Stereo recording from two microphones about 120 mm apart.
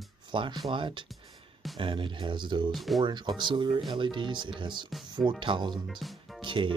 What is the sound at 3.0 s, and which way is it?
Speech, 40° right (ahead or behind).